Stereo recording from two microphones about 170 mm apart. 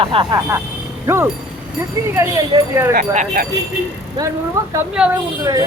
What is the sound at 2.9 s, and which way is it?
Speech, 60° right (ahead or behind).